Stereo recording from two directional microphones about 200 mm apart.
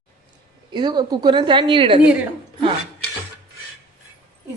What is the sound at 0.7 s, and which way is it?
A woman's voice, 20° right (ahead or behind).